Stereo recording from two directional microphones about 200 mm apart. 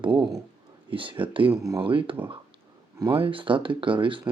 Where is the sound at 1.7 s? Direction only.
25° right (ahead or behind).